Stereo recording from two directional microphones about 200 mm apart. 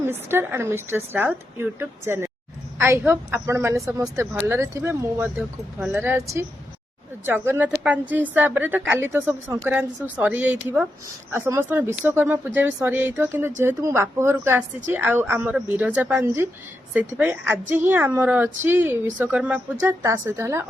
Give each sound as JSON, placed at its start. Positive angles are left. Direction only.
{"t": 0.0, "sound": "a woman's voice", "side_deg": -10}